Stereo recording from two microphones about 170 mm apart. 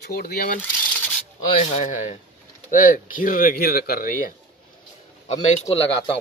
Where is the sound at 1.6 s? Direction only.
45° left (ahead or behind).